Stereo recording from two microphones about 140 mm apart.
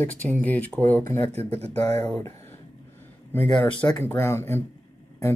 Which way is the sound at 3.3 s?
20° left (ahead or behind).